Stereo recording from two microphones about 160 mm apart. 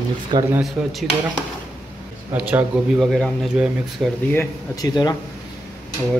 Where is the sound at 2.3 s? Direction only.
10° right (ahead or behind).